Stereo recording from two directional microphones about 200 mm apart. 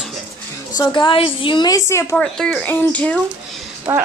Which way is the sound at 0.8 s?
25° left (ahead or behind).